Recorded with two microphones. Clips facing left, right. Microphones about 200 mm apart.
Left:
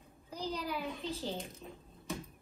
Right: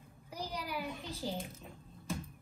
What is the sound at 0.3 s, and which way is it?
A child's voice, 10° right (ahead or behind).